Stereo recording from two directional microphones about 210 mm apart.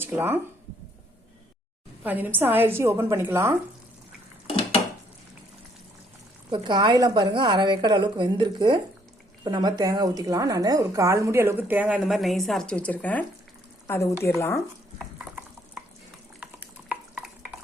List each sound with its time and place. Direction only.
0.0 s speech: 10° right (ahead or behind)
2.0 s a woman's voice: 10° right (ahead or behind)
6.5 s a woman's voice: 20° right (ahead or behind); by 14.6 s 10° left (ahead or behind)
14.9 s stir: 5° right (ahead or behind)